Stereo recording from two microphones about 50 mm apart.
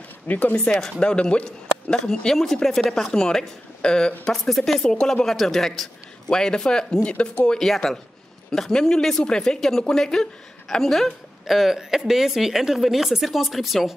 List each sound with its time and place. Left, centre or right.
0.3 s speech: left
0.7 s speech: centre
1.3 s speech: left
2.4 s speech: centre; by 7.5 s left
7.5 s speech: centre